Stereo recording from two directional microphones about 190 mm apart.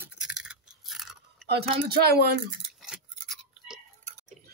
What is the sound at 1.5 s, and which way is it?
Speech, 55° right (ahead or behind).